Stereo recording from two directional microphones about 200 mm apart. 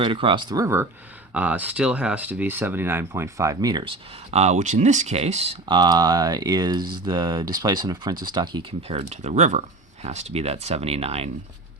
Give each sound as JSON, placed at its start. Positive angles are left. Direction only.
{"t": 0.0, "sound": "speech", "side_deg": -25}
{"t": 4.3, "sound": "speech", "side_deg": -35}